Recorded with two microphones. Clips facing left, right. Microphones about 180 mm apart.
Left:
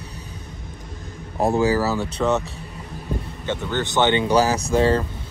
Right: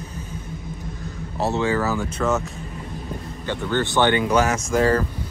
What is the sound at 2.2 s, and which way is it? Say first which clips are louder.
Speech: left 2 dB; centre (ahead or behind).